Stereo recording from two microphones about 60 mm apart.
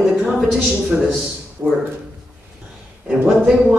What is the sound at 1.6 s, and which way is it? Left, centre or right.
Speech, centre.